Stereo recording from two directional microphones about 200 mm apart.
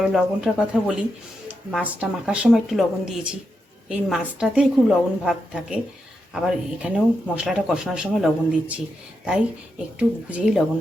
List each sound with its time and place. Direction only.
0.0 s speech: 5° right (ahead or behind)
10.0 s speech: 5° right (ahead or behind)